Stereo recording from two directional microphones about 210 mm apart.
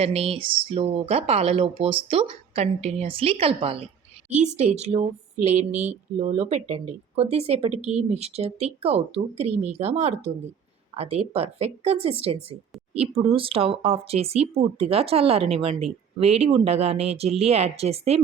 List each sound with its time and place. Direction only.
0.0 s speech: 30° right (ahead or behind)
5.7 s mantra: 10° right (ahead or behind)
6.1 s speech: 30° right (ahead or behind)
7.8 s speech: 5° right (ahead or behind)
8.1 s speech: 30° right (ahead or behind)